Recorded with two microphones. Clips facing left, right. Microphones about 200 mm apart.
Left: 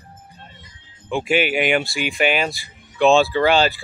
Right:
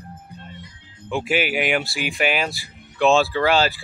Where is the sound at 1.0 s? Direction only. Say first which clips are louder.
Left 3 dB; 5° right (ahead or behind).